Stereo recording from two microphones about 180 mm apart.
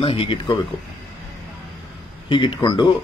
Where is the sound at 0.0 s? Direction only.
30° left (ahead or behind).